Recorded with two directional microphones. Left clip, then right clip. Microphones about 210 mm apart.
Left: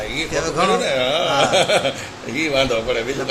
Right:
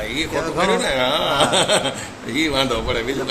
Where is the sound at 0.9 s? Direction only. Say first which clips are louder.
Even; 20° right (ahead or behind).